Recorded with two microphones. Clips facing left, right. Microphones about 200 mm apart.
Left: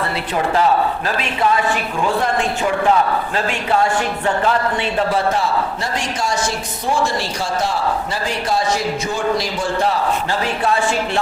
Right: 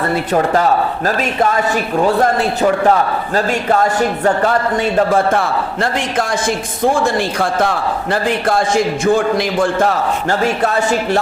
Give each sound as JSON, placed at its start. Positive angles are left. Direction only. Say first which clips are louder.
{"t": 0.1, "sound": "a man's voice", "louder": "right 5 dB", "side_deg": -45}